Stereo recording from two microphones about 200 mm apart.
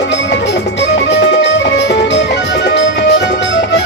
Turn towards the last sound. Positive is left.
turn(degrees=60)  # may be behind; listen again after turning